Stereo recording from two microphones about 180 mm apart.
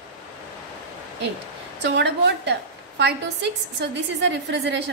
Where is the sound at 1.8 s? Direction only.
70° right (ahead or behind).